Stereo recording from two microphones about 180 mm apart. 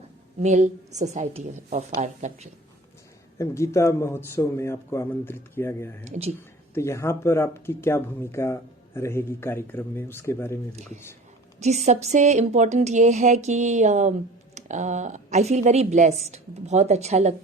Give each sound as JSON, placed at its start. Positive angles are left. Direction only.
{"t": 0.4, "sound": "speech", "side_deg": -40}
{"t": 3.3, "sound": "a man's voice", "side_deg": 15}
{"t": 6.1, "sound": "speech", "side_deg": -35}
{"t": 6.7, "sound": "a man's voice", "side_deg": 15}
{"t": 11.6, "sound": "speech", "side_deg": -40}